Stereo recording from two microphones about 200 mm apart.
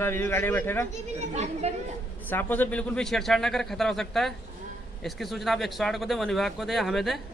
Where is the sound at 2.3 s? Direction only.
10° left (ahead or behind).